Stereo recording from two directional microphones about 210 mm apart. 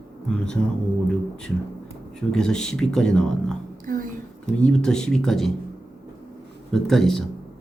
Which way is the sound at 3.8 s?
40° right (ahead or behind).